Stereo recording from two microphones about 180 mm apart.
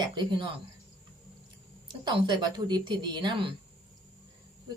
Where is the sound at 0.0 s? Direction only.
25° right (ahead or behind).